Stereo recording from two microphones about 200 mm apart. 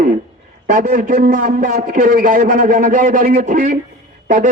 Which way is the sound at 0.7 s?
45° right (ahead or behind).